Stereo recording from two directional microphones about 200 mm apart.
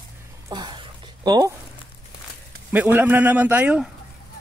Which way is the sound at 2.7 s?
10° right (ahead or behind).